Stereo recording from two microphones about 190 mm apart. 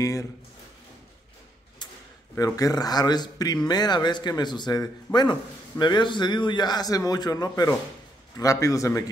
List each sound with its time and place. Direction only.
0.0 s speech: 15° left (ahead or behind)
2.3 s a man's voice: 20° left (ahead or behind)